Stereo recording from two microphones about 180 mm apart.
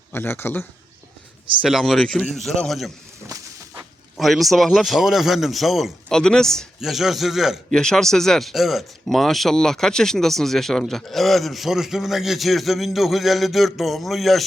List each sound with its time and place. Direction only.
0.1 s a man's voice: 15° left (ahead or behind)
1.6 s a man's voice: centre (ahead or behind)
3.2 s a sound: 15° right (ahead or behind)
4.2 s a man's voice: centre (ahead or behind)